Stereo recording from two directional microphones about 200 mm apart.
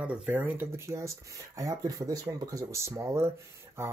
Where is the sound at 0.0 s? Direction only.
5° right (ahead or behind).